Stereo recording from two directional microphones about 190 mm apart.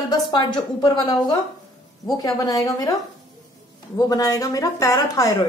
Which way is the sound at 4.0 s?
20° left (ahead or behind).